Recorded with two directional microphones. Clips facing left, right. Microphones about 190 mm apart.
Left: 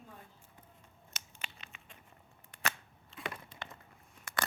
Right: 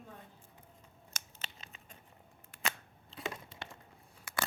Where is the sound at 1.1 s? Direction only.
35° right (ahead or behind).